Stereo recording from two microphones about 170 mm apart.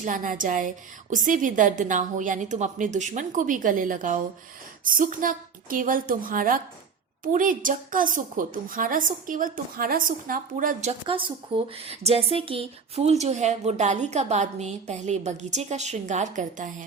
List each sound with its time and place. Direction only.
0.0 s a woman's voice: 50° right (ahead or behind)
11.0 s a woman's voice: 30° right (ahead or behind); by 16.6 s 45° right (ahead or behind)